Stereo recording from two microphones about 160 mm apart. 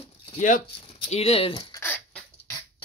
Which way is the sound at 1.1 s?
40° left (ahead or behind).